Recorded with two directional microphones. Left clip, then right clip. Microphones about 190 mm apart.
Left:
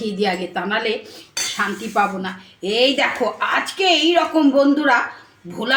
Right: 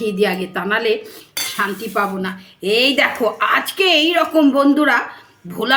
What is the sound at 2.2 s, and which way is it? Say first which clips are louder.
A woman's voice: right 4 dB; 55° right (ahead or behind).